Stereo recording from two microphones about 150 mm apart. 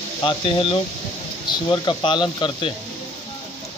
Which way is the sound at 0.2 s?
35° left (ahead or behind).